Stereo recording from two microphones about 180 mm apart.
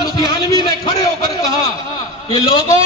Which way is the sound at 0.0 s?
20° left (ahead or behind).